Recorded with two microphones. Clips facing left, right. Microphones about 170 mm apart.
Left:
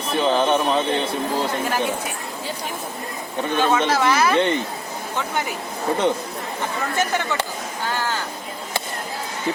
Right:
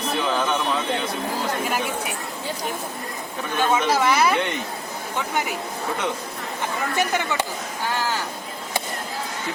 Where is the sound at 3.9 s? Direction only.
10° right (ahead or behind).